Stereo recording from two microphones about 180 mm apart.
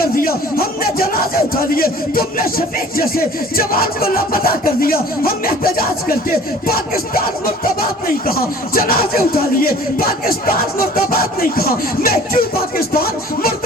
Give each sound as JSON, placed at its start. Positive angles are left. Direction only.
{"t": 0.0, "sound": "speech", "side_deg": 55}